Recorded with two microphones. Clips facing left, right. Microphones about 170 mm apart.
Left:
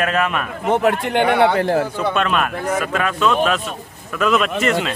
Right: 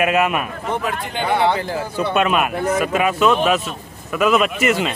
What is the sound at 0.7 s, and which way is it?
A man's voice, 65° left (ahead or behind).